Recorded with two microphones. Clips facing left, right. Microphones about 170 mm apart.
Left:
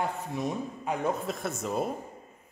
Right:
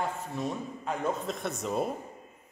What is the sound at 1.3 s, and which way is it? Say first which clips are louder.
Speech: even; centre (ahead or behind).